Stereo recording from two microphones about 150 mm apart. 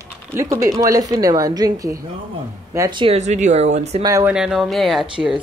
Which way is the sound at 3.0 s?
45° right (ahead or behind).